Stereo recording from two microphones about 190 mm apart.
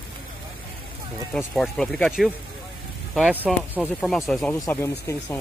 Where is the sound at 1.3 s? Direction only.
5° left (ahead or behind).